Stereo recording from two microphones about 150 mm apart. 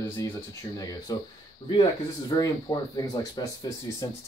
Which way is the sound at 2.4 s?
25° left (ahead or behind).